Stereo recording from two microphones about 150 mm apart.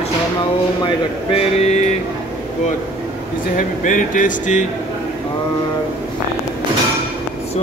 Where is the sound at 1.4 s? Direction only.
50° left (ahead or behind).